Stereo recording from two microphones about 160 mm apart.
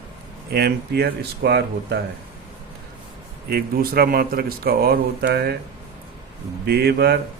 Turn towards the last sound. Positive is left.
turn(degrees=-90)